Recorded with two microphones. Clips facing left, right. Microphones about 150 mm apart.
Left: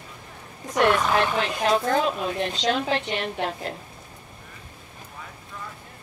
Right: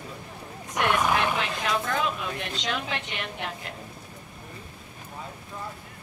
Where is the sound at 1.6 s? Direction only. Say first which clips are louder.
Left 8 dB; 35° left (ahead or behind).